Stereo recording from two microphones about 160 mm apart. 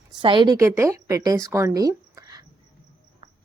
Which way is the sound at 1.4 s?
20° right (ahead or behind).